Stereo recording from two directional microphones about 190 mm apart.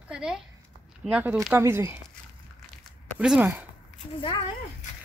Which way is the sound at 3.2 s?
5° right (ahead or behind).